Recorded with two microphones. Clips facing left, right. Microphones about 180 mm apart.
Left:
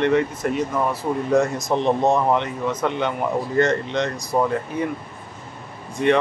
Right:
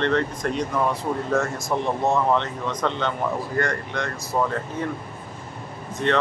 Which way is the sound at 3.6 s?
20° left (ahead or behind).